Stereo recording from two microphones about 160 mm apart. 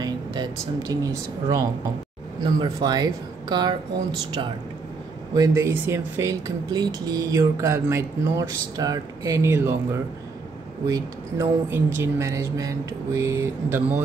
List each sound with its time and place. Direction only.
0.0 s speech: 25° right (ahead or behind)
5.3 s speech: 20° right (ahead or behind)